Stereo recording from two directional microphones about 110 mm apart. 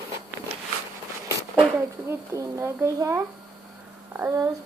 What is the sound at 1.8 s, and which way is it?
Speech, 25° right (ahead or behind).